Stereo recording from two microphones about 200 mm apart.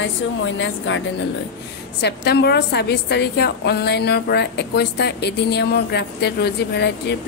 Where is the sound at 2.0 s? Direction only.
55° left (ahead or behind).